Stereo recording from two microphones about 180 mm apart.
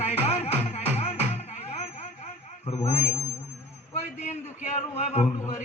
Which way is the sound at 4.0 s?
40° left (ahead or behind).